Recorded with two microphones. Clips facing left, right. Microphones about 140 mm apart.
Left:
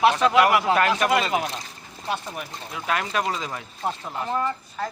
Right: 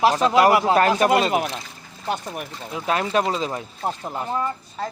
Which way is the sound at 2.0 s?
50° right (ahead or behind).